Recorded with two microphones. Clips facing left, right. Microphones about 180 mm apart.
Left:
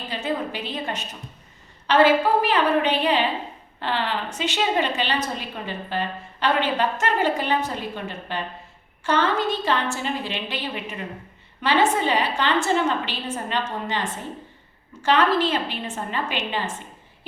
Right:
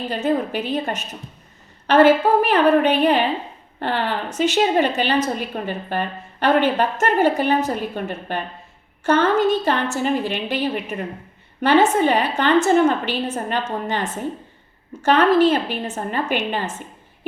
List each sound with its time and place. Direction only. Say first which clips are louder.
0.1 s a woman's voice: right 5 dB; 50° right (ahead or behind)
15.0 s a woman's voice: right 5 dB; 45° right (ahead or behind)